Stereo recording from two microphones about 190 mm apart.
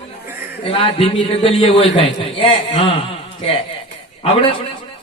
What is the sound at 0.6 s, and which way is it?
A man's voice, 30° left (ahead or behind).